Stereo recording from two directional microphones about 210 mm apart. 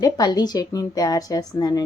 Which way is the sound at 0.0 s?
20° left (ahead or behind).